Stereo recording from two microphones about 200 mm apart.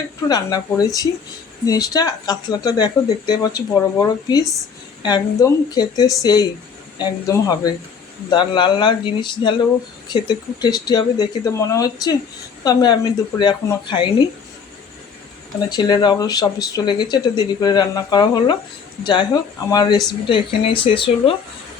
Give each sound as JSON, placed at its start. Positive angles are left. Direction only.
{"t": 0.3, "sound": "speech", "side_deg": 20}
{"t": 15.7, "sound": "speech", "side_deg": 20}